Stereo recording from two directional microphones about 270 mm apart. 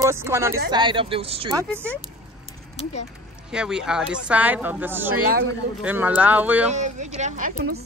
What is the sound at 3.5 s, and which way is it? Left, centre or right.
Speech, centre.